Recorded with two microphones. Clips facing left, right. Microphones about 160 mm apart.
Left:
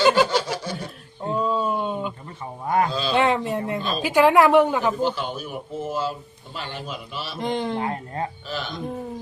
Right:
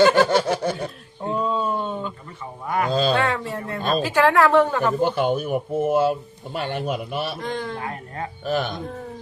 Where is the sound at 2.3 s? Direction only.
30° left (ahead or behind).